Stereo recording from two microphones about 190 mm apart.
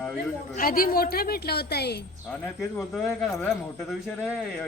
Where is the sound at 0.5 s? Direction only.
50° left (ahead or behind).